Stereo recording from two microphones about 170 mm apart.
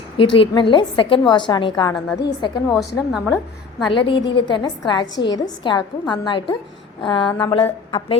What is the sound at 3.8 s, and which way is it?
A woman's voice, 30° left (ahead or behind).